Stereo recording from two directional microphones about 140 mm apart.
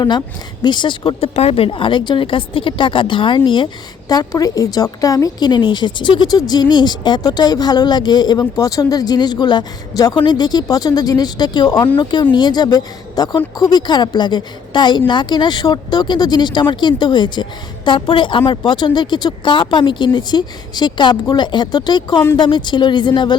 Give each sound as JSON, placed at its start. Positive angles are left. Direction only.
{"t": 0.6, "sound": "a woman's voice", "side_deg": 35}